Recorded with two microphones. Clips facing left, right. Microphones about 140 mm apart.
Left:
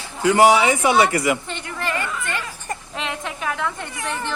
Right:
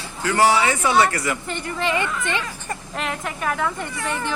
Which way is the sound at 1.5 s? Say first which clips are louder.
Right 3 dB; centre (ahead or behind).